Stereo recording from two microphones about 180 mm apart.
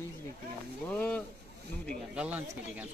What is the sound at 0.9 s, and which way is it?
Speech, 5° left (ahead or behind).